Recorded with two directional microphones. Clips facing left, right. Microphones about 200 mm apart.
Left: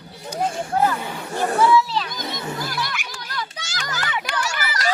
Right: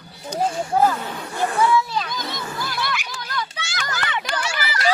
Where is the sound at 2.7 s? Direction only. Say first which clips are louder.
Right 2 dB; 45° left (ahead or behind).